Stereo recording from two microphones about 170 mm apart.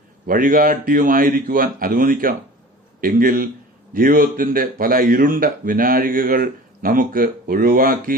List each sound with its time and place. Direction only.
0.3 s a man's voice: 55° right (ahead or behind)